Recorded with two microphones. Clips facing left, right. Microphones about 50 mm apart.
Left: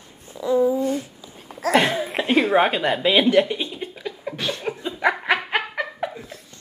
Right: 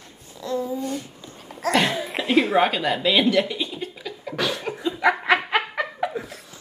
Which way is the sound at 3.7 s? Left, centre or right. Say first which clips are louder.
Left 1 dB; centre.